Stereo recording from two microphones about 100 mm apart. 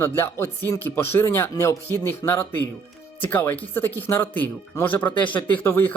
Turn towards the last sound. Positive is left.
turn(degrees=25)  # may be behind; listen again after turning